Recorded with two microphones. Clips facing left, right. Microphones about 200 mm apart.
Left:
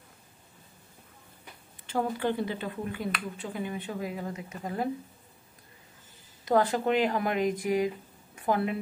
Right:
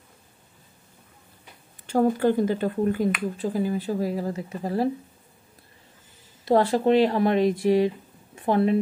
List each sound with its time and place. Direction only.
1.9 s speech: 45° right (ahead or behind)
6.4 s a woman's voice: 30° right (ahead or behind)